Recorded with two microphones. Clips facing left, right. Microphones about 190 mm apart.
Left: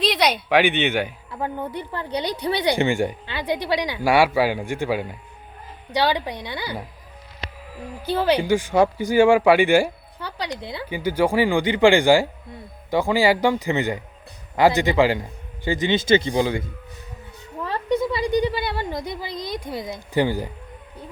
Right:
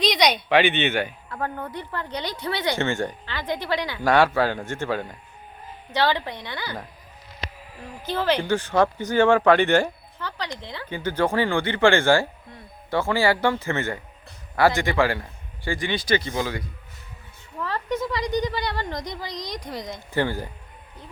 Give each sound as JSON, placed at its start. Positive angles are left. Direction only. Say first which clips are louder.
{"t": 0.0, "sound": "speech", "louder": "even", "side_deg": 5}
{"t": 8.0, "sound": "a man's voice", "louder": "left 3 dB", "side_deg": 15}
{"t": 17.6, "sound": "a sound", "louder": "left 4 dB", "side_deg": 15}
{"t": 18.5, "sound": "speech", "louder": "left 2 dB", "side_deg": 10}